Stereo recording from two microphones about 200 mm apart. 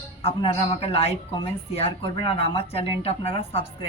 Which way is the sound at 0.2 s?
30° left (ahead or behind).